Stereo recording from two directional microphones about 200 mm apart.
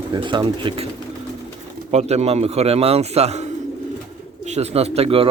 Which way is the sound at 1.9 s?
35° right (ahead or behind).